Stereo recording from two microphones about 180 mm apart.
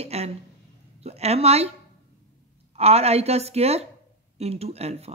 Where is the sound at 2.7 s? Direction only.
35° right (ahead or behind).